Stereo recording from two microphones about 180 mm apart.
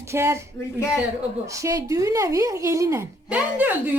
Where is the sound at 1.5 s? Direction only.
15° right (ahead or behind).